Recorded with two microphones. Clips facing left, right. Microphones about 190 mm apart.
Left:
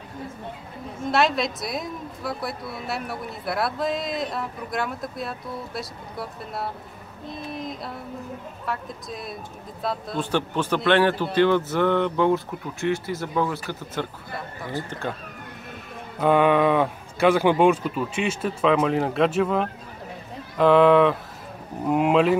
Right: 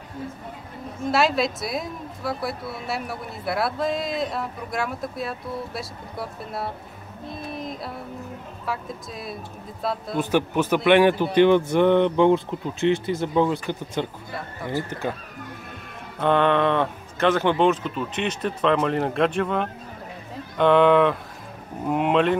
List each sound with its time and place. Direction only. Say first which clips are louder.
1.1 s a woman's voice: right 1 dB; centre (ahead or behind); by 14.0 s 20° right (ahead or behind)
14.3 s a woman's voice: right 3 dB; centre (ahead or behind)
16.2 s a woman's voice: left 1 dB; 10° left (ahead or behind)